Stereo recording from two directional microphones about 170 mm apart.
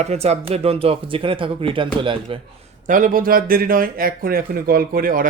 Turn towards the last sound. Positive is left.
turn(degrees=-55)  # may be behind; listen again after turning